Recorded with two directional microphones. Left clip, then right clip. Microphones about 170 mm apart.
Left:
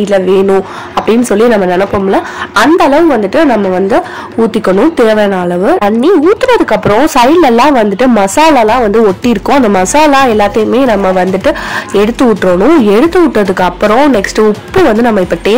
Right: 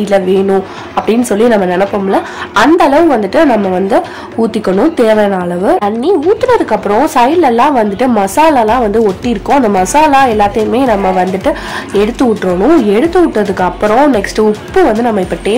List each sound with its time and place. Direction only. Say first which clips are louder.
0.0 s speech: left 2 dB; 15° left (ahead or behind)
5.9 s speech: left 3 dB; 35° left (ahead or behind)